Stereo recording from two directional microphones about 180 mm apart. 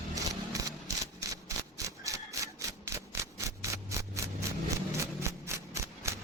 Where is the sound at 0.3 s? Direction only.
20° right (ahead or behind).